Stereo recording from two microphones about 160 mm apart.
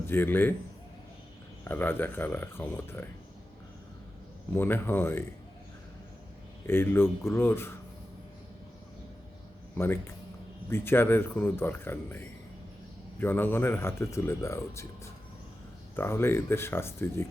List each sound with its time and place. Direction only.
0.1 s speech: 15° left (ahead or behind)
1.6 s speech: 10° left (ahead or behind)
4.5 s speech: 15° left (ahead or behind)
6.7 s speech: 15° left (ahead or behind)
9.7 s speech: 15° left (ahead or behind)
16.0 s speech: 15° left (ahead or behind)